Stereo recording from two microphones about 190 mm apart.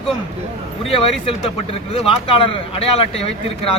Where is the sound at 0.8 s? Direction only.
30° left (ahead or behind).